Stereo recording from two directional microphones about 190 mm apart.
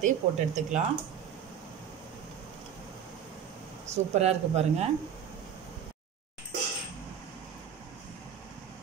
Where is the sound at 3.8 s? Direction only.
35° right (ahead or behind).